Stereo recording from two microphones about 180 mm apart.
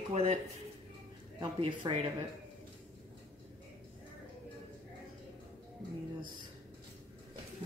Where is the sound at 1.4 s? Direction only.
25° right (ahead or behind).